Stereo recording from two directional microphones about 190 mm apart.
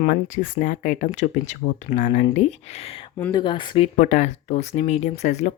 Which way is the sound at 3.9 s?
45° left (ahead or behind).